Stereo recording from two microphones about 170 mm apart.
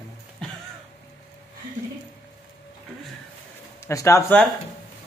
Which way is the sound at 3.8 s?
15° left (ahead or behind).